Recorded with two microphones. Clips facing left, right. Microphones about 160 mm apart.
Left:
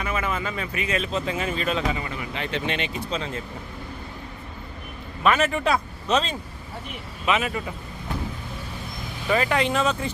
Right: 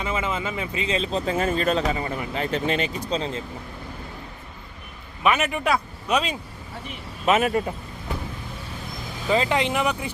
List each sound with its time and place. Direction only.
0.0 s speech: 25° right (ahead or behind)
5.2 s speech: 15° right (ahead or behind)
7.3 s speech: 45° right (ahead or behind)
9.3 s speech: 20° right (ahead or behind)